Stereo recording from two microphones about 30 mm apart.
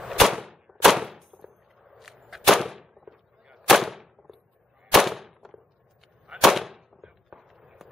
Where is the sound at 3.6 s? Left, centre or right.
Centre.